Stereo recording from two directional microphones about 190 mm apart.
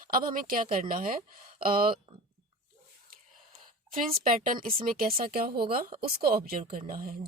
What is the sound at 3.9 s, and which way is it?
Speech, 45° right (ahead or behind).